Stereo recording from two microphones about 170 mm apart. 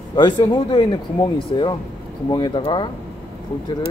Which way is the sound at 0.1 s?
25° left (ahead or behind).